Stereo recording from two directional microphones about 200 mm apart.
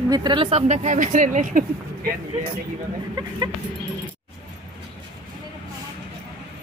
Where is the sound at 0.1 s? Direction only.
20° right (ahead or behind); by 1.6 s 40° right (ahead or behind).